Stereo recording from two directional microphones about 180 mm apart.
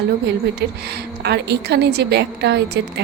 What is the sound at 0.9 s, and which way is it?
A woman's voice, 65° right (ahead or behind).